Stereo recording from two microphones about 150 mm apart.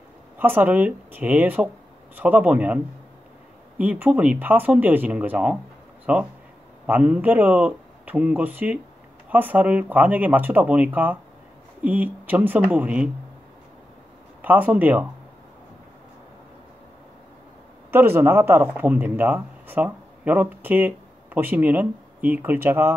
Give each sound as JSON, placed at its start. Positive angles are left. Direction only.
{"t": 0.4, "sound": "speech", "side_deg": -10}
{"t": 14.4, "sound": "speech", "side_deg": -10}
{"t": 17.9, "sound": "speech", "side_deg": -15}